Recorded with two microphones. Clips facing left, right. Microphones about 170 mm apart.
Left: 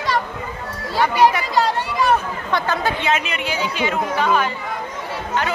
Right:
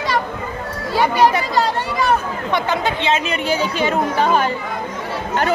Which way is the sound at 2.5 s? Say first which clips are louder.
Right 1 dB; 20° right (ahead or behind).